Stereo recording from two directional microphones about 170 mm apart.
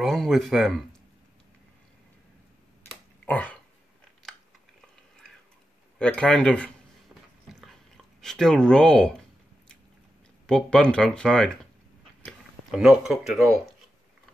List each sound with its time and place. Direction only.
0.0 s speech: centre (ahead or behind)
3.3 s dog: 10° left (ahead or behind)
4.2 s chewing: 5° left (ahead or behind)
5.9 s speech: 5° left (ahead or behind)
7.4 s chewing: centre (ahead or behind)
10.4 s speech: 5° left (ahead or behind)